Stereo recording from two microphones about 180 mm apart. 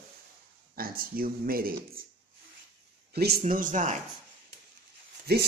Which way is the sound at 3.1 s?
60° right (ahead or behind).